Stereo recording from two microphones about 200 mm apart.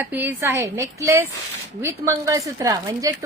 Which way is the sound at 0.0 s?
10° right (ahead or behind).